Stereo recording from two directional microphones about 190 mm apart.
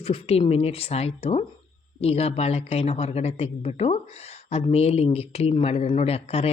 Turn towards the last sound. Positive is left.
turn(degrees=30)  # may be behind; listen again after turning